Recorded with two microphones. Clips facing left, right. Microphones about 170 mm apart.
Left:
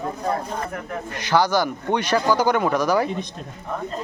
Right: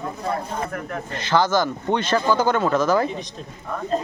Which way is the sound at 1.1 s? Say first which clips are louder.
Even; 10° left (ahead or behind).